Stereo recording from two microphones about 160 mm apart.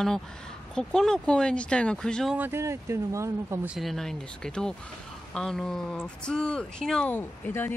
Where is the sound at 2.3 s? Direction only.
15° right (ahead or behind).